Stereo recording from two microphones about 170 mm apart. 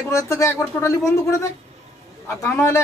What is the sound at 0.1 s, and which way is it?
A woman's voice, 15° left (ahead or behind).